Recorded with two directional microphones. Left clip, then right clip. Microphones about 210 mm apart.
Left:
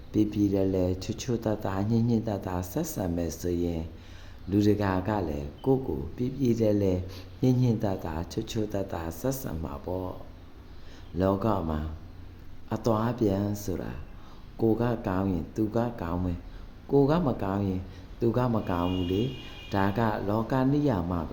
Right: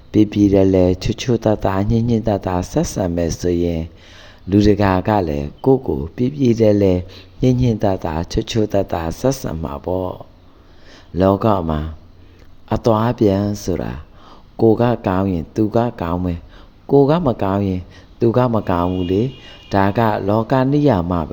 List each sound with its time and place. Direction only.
0.1 s speech: 30° right (ahead or behind)
11.2 s speech: 35° right (ahead or behind)